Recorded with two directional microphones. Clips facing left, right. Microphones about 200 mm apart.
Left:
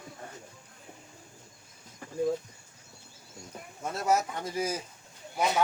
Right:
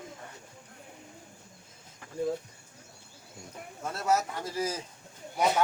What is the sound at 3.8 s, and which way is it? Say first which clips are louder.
A man's voice: left 1 dB; 15° left (ahead or behind).